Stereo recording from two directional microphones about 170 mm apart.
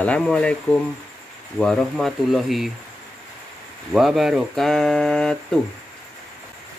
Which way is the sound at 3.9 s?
Centre (ahead or behind).